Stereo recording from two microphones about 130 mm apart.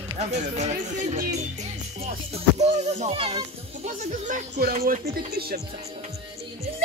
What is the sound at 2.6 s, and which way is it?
Speech, 55° right (ahead or behind).